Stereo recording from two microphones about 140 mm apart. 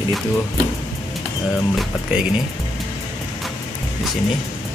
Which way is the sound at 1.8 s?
5° right (ahead or behind).